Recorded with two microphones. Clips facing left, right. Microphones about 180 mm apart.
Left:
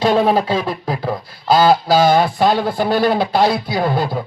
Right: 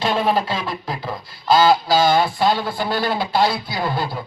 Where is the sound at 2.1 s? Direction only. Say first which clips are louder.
Left 3 dB; 45° left (ahead or behind).